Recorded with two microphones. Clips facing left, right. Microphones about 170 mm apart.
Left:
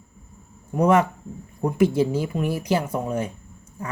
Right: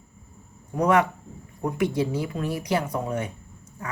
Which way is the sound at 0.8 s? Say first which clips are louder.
Left 2 dB; 25° left (ahead or behind).